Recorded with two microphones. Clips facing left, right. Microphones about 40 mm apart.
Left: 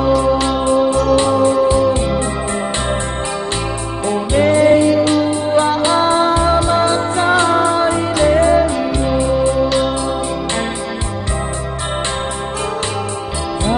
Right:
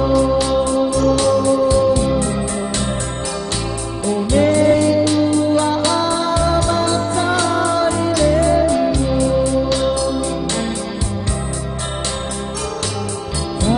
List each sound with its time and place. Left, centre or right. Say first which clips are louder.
1.1 s music: left 2 dB; left
4.3 s music: left 2 dB; left